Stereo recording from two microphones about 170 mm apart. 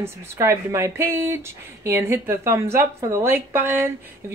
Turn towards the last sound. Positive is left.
turn(degrees=-10)  # may be behind; listen again after turning